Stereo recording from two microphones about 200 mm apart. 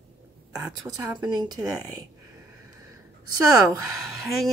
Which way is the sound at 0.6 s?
15° right (ahead or behind).